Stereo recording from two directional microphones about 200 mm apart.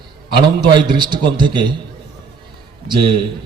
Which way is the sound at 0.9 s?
20° right (ahead or behind).